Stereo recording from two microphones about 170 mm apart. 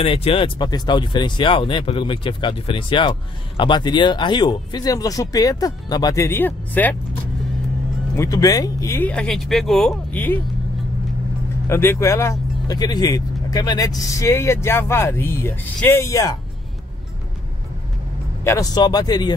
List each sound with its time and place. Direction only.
0.0 s speech: 35° left (ahead or behind); by 7.0 s 10° left (ahead or behind)
8.2 s speech: 20° left (ahead or behind)
11.7 s speech: 15° left (ahead or behind)
18.4 s speech: 20° left (ahead or behind)